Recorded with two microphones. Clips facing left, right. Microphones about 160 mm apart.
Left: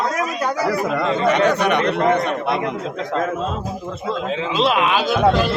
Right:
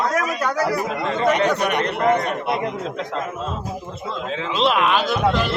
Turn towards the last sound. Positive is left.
turn(degrees=5)  # may be behind; listen again after turning